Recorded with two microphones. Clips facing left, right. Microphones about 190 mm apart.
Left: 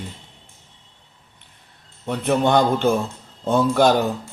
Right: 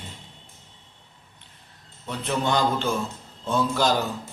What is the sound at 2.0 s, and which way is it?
A man's voice, 55° left (ahead or behind).